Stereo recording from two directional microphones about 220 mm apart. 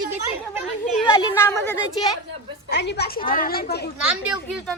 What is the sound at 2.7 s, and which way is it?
A woman's voice, 50° left (ahead or behind).